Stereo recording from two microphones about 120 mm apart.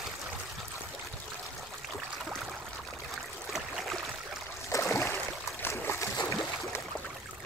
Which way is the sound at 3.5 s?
Centre (ahead or behind).